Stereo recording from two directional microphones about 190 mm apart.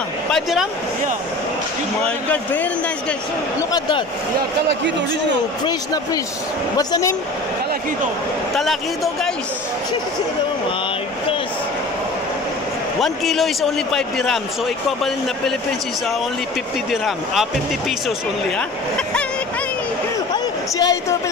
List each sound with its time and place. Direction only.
0.3 s speech: centre (ahead or behind)
2.0 s speech: 10° left (ahead or behind)
6.8 s speech: 20° left (ahead or behind)
8.5 s a man's voice: centre (ahead or behind)
13.0 s a man's voice: centre (ahead or behind)
16.9 s a man's voice: centre (ahead or behind)
20.7 s speech: 20° left (ahead or behind)